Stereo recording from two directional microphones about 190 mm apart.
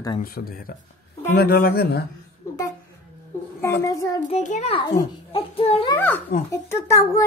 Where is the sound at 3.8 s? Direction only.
15° left (ahead or behind).